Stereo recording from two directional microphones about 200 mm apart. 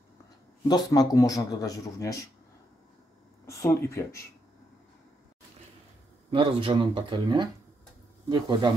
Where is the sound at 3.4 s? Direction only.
15° left (ahead or behind).